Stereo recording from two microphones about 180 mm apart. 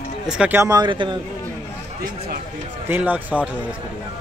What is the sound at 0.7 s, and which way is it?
Speech, 25° right (ahead or behind).